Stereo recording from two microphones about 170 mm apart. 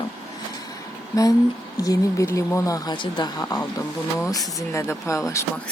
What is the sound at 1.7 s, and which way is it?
Speech, 20° left (ahead or behind).